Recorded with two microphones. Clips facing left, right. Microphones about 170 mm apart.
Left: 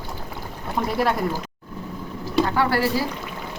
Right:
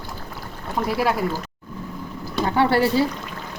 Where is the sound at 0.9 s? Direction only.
5° right (ahead or behind).